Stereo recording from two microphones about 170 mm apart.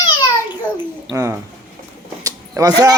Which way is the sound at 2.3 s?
20° right (ahead or behind).